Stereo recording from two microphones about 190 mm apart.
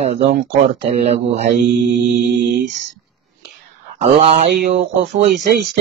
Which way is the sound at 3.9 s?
35° right (ahead or behind).